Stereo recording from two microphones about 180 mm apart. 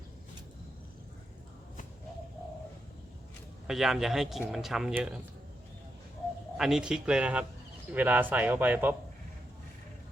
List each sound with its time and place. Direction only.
3.7 s speech: centre (ahead or behind)
6.6 s speech: 5° right (ahead or behind)